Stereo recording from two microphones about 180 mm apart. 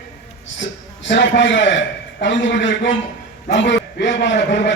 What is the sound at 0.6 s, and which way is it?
A man's voice, 90° left.